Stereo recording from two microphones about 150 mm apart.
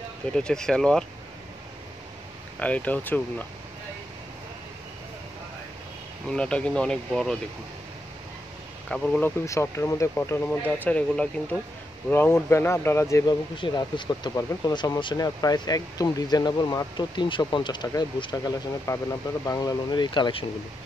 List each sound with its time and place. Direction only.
0.4 s speech: 5° left (ahead or behind)
2.6 s speech: 10° left (ahead or behind)
6.2 s speech: 5° left (ahead or behind)
8.9 s speech: 5° left (ahead or behind)
9.5 s speech: 20° left (ahead or behind)
13.6 s speech: 30° left (ahead or behind)